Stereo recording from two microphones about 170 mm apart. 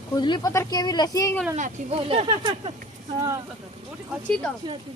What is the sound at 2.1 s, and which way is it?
Speech, 30° right (ahead or behind).